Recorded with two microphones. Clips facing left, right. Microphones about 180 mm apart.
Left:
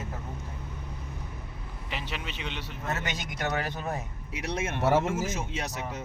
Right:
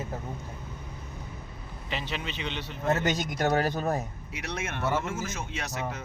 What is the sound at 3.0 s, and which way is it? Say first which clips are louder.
Speech: right 6 dB; 40° right (ahead or behind).